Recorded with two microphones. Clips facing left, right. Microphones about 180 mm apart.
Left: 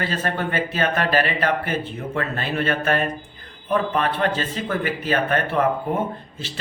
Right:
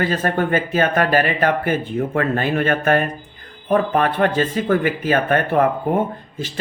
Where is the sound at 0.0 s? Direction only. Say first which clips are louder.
Right 5 dB; 45° right (ahead or behind).